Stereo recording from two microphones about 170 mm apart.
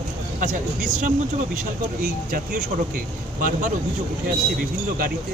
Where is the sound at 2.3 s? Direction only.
50° right (ahead or behind).